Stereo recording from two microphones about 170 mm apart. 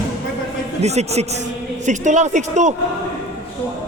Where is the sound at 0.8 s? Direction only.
40° right (ahead or behind).